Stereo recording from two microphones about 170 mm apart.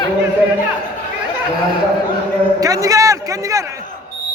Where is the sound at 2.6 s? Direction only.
20° right (ahead or behind).